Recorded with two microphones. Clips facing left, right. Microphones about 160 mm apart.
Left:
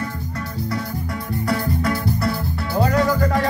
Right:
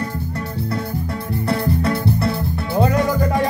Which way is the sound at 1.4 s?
25° right (ahead or behind).